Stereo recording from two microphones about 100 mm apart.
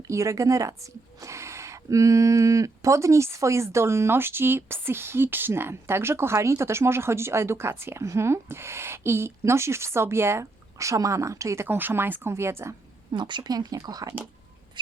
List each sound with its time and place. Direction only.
0.1 s a woman's voice: 30° right (ahead or behind)
13.1 s speech: 50° right (ahead or behind)